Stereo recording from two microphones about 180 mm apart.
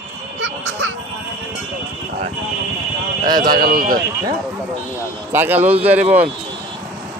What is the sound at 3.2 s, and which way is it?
Speech, 25° right (ahead or behind).